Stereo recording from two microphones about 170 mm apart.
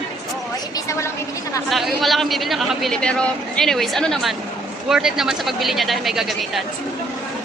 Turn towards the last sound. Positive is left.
turn(degrees=0)  # may be behind; listen again after turning